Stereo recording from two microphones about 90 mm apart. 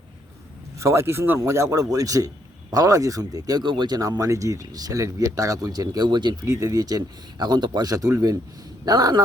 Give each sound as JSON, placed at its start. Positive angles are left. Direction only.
{"t": 0.8, "sound": "speech", "side_deg": -30}
{"t": 6.4, "sound": "speech", "side_deg": -35}